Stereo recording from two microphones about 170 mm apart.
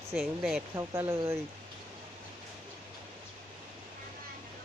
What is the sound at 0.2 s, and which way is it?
Speech, centre (ahead or behind).